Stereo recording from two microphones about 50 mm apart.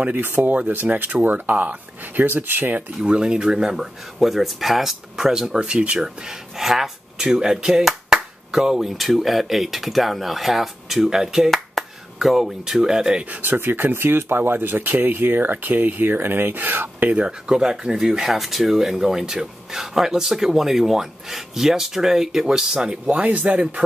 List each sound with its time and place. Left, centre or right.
0.2 s speech: right
2.2 s speech: right
3.0 s speech: centre
11.8 s finger snapping: centre
12.2 s speech: centre; by 13.4 s right
13.4 s speech: right
17.1 s speech: centre
23.0 s speech: right